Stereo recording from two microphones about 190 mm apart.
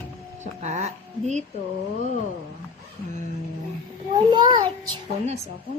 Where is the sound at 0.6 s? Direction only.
35° right (ahead or behind).